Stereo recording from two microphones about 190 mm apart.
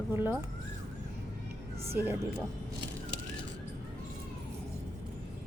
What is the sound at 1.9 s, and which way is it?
Speech, 10° right (ahead or behind).